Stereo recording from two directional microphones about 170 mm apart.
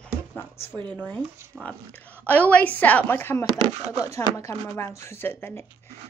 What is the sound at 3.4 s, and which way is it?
Speech, 25° right (ahead or behind).